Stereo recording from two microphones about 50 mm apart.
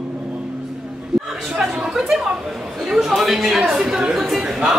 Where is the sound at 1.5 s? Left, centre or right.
Centre.